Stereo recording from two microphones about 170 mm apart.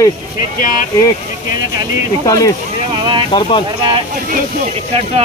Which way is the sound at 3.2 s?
30° left (ahead or behind).